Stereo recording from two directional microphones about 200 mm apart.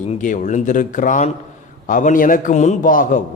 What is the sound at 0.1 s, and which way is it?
A man's voice, 40° left (ahead or behind).